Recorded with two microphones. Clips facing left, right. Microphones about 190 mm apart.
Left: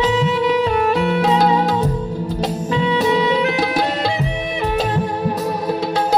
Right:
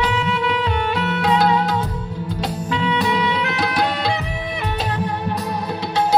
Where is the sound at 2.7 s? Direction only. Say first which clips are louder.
Left 4 dB; 40° left (ahead or behind).